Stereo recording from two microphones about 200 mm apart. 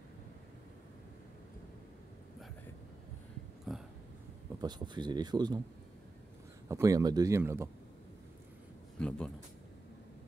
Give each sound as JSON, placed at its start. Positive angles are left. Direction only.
{"t": 3.7, "sound": "a sound", "side_deg": 0}
{"t": 4.6, "sound": "speech", "side_deg": -20}
{"t": 6.7, "sound": "a man's voice", "side_deg": -15}
{"t": 9.0, "sound": "a man's voice", "side_deg": 5}